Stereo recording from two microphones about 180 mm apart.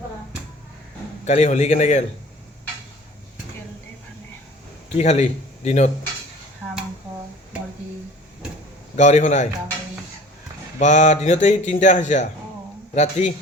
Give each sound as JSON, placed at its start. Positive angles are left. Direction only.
{"t": 1.2, "sound": "speech", "side_deg": 40}
{"t": 4.9, "sound": "speech", "side_deg": 35}
{"t": 9.0, "sound": "speech", "side_deg": 40}
{"t": 10.8, "sound": "speech", "side_deg": 40}